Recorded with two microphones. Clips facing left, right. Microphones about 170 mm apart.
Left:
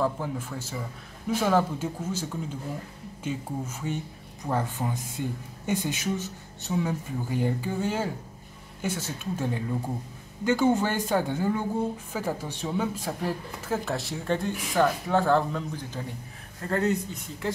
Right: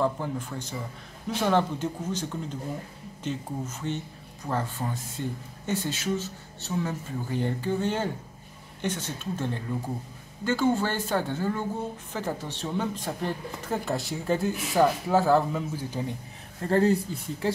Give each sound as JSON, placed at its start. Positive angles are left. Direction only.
{"t": 0.0, "sound": "a man's voice", "side_deg": 5}
{"t": 16.6, "sound": "speech", "side_deg": -30}